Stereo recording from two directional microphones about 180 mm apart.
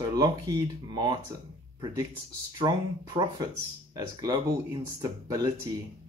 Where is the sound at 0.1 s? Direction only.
20° right (ahead or behind).